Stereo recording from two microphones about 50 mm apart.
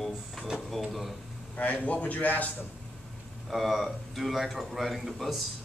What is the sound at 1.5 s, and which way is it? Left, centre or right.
Speech, left.